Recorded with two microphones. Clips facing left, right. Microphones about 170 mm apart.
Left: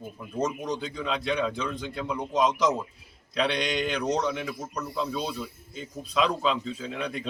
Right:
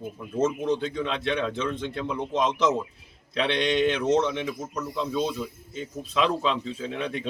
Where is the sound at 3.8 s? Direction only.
Centre (ahead or behind).